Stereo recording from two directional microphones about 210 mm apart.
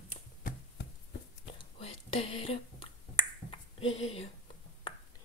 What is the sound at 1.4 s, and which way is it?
Finger snapping, 25° left (ahead or behind).